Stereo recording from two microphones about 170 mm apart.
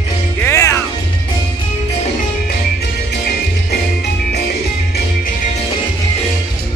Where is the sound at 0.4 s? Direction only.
15° left (ahead or behind).